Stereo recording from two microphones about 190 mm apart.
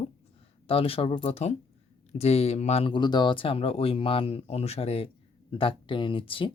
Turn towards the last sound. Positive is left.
turn(degrees=25)  # may be behind; listen again after turning